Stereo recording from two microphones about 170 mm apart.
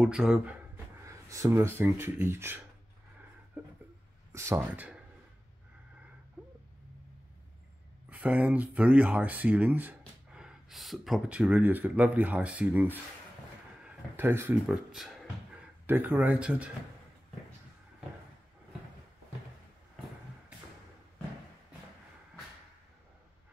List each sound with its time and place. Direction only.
0.0 s speech: 5° right (ahead or behind)
1.0 s speech: 15° right (ahead or behind)
4.3 s speech: 15° right (ahead or behind)
8.1 s speech: 10° right (ahead or behind)
14.7 s speech: centre (ahead or behind)